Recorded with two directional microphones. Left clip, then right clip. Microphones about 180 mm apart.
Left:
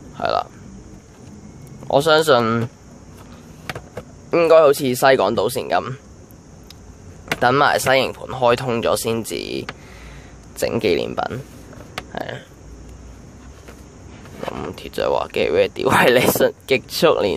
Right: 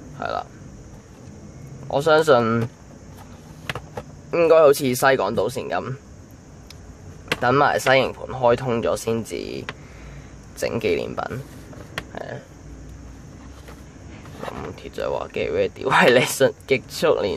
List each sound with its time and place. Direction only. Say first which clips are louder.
0.2 s speech: left 7 dB; 20° left (ahead or behind)
1.9 s speech: left 2 dB; 20° left (ahead or behind)
4.3 s speech: left 2 dB; 15° left (ahead or behind)
7.3 s speech: left 3 dB; 15° left (ahead or behind)
12.1 s a sound: left 4 dB; 20° left (ahead or behind)
14.4 s speech: left 4 dB; 15° left (ahead or behind)